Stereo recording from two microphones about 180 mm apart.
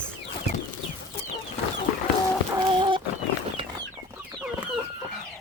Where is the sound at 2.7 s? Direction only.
30° right (ahead or behind).